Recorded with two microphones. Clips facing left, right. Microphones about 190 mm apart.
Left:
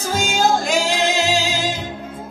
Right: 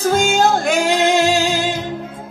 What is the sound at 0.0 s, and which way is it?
Music, 55° right (ahead or behind).